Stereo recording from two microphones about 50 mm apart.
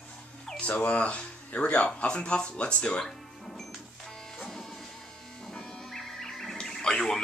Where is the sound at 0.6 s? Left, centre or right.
Left.